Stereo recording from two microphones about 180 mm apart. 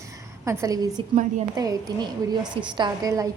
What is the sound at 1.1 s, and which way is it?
Speech, 40° right (ahead or behind).